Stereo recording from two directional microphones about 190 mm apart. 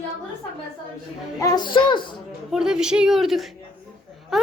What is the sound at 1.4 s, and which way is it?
Speech, 25° left (ahead or behind).